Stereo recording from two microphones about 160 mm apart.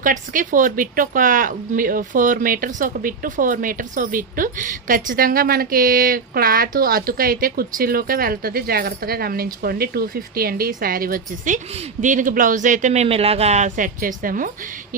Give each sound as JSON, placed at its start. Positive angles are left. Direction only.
{"t": 0.0, "sound": "a man's voice", "side_deg": -55}